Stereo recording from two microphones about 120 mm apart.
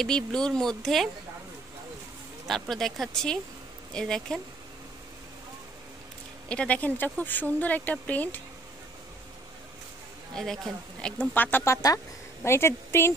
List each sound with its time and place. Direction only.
0.0 s speech: 5° left (ahead or behind)
2.7 s speech: centre (ahead or behind)
6.5 s speech: 10° left (ahead or behind)
10.3 s a woman's voice: 5° left (ahead or behind); by 13.1 s 20° left (ahead or behind)